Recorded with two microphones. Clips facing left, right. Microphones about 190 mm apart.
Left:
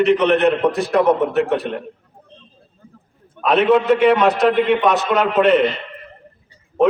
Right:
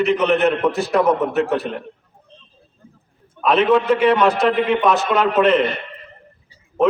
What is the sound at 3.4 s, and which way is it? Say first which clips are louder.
A man's voice: left 1 dB; centre (ahead or behind).